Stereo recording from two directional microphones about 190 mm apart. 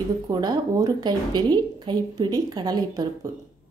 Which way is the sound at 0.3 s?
20° right (ahead or behind).